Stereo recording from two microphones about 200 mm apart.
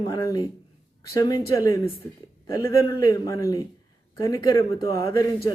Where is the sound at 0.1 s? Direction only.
20° left (ahead or behind).